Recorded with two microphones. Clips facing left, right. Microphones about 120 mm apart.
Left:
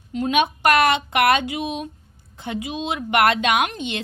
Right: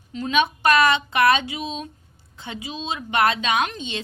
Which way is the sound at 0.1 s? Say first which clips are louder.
Left 2 dB; 50° left (ahead or behind).